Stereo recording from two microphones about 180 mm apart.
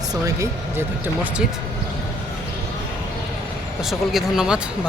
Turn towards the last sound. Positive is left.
turn(degrees=-5)  # may be behind; listen again after turning